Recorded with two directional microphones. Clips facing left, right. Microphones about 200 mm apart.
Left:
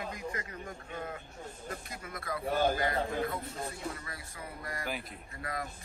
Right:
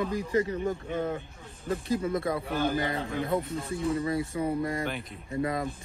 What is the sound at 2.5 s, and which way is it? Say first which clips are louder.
Speech: left 1 dB; 50° left (ahead or behind).